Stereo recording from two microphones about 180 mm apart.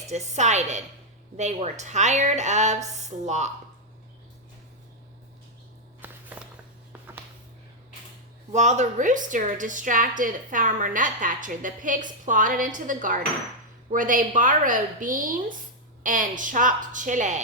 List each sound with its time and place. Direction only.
0.1 s a woman's voice: 40° right (ahead or behind)
6.0 s a sound: 10° right (ahead or behind)
8.5 s a woman's voice: 40° right (ahead or behind)